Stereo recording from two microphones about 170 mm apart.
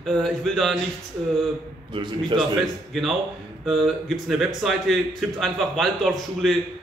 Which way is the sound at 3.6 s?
Centre (ahead or behind).